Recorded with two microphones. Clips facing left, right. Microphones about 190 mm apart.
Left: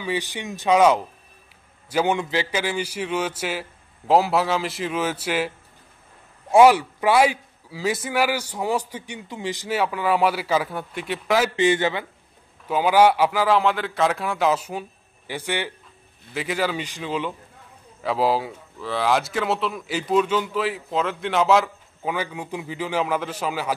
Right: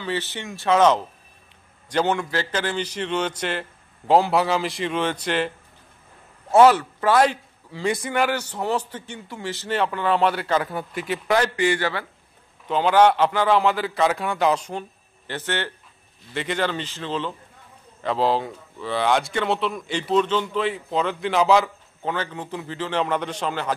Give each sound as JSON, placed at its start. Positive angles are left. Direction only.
{"t": 0.0, "sound": "a man's voice", "side_deg": 15}
{"t": 6.5, "sound": "a man's voice", "side_deg": 10}
{"t": 11.5, "sound": "a man's voice", "side_deg": 20}
{"t": 12.6, "sound": "a man's voice", "side_deg": 10}